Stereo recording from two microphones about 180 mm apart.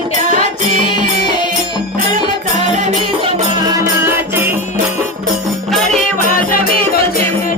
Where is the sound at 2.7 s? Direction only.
45° right (ahead or behind).